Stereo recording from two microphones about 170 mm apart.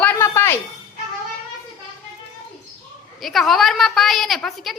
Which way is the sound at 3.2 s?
Centre (ahead or behind).